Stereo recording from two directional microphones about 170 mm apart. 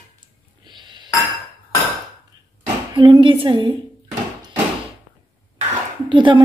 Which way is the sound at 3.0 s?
30° right (ahead or behind).